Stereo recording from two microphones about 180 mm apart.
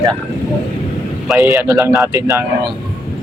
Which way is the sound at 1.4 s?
15° right (ahead or behind).